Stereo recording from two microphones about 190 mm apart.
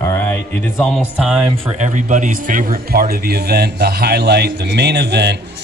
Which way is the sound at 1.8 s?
40° right (ahead or behind).